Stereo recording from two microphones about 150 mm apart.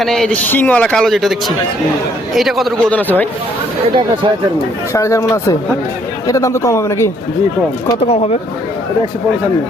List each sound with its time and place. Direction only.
0.0 s a man's voice: 5° left (ahead or behind)
4.9 s speech: 20° left (ahead or behind)
8.0 s speech: 40° left (ahead or behind)